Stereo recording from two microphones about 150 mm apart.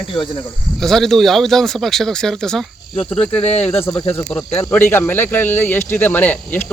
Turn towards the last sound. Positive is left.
turn(degrees=10)  # may be behind; listen again after turning